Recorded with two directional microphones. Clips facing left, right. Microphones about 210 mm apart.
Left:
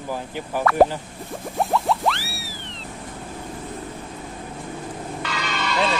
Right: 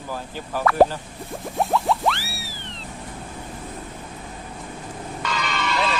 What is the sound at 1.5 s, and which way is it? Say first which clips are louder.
Boing: even; centre (ahead or behind).